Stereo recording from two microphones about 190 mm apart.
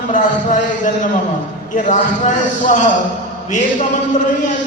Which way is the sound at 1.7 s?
40° left (ahead or behind).